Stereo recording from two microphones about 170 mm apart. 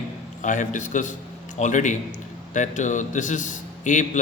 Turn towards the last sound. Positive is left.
turn(degrees=45)  # may be behind; listen again after turning